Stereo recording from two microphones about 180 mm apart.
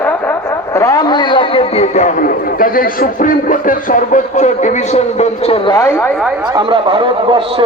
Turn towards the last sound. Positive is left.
turn(degrees=-30)  # may be behind; listen again after turning